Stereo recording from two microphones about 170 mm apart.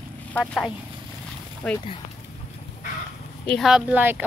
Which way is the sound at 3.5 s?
Centre (ahead or behind).